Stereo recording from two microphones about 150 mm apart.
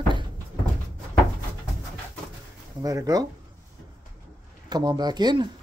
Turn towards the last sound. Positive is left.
turn(degrees=-30)  # may be behind; listen again after turning